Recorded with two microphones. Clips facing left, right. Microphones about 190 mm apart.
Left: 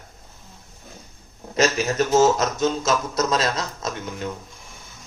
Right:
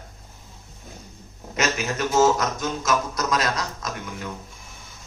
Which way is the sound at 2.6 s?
25° left (ahead or behind).